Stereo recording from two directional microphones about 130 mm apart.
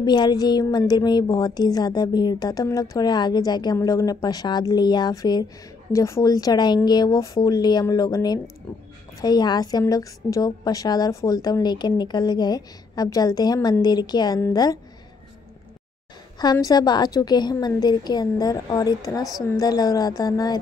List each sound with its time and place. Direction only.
0.0 s a woman's voice: 35° left (ahead or behind)
16.6 s a woman's voice: 30° left (ahead or behind)